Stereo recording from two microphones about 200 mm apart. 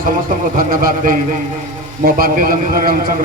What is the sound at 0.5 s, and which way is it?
A man's voice, 45° right (ahead or behind).